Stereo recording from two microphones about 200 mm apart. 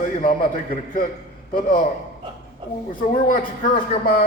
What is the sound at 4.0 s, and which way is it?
Speech, 45° left (ahead or behind).